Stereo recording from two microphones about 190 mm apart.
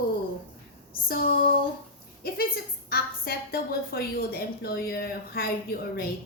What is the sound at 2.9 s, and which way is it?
A woman's voice, 55° left (ahead or behind).